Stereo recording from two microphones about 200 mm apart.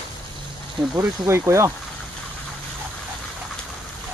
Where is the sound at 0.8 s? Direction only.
20° right (ahead or behind).